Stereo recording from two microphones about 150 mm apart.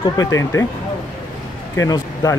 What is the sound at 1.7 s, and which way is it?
Speech, 25° left (ahead or behind).